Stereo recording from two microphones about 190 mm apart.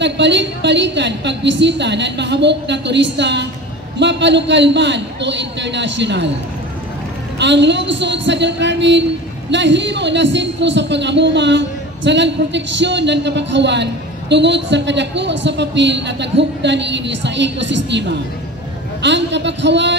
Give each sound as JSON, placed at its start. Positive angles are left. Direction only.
{"t": 0.0, "sound": "a woman's voice", "side_deg": -70}
{"t": 7.3, "sound": "a woman's voice", "side_deg": -65}
{"t": 19.0, "sound": "a woman's voice", "side_deg": -70}